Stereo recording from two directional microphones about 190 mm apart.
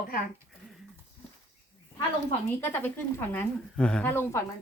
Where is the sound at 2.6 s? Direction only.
10° left (ahead or behind).